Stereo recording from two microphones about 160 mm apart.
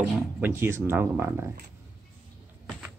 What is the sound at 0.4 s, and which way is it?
Speech, 15° right (ahead or behind).